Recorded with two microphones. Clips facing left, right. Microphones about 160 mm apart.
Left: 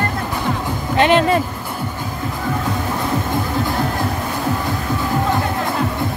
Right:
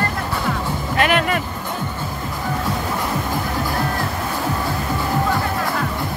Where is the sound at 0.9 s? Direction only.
25° left (ahead or behind).